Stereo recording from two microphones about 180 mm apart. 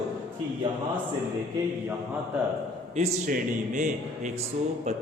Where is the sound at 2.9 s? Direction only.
35° right (ahead or behind).